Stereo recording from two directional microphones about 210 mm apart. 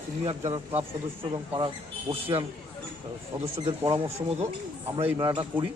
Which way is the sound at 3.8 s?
25° right (ahead or behind).